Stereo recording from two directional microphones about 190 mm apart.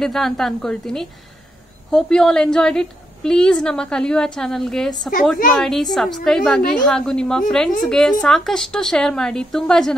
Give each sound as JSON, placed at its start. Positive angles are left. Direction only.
{"t": 0.0, "sound": "a woman's voice", "side_deg": 0}